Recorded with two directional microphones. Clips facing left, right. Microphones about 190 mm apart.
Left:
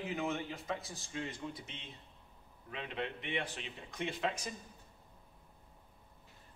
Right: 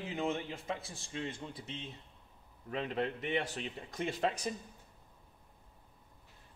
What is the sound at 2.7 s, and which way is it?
A man's voice, 45° right (ahead or behind).